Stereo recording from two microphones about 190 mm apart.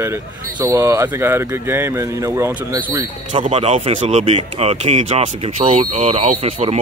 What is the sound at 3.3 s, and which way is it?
Speech, 35° right (ahead or behind).